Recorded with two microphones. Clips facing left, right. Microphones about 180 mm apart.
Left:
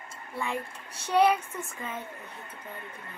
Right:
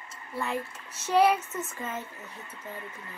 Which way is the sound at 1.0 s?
5° right (ahead or behind).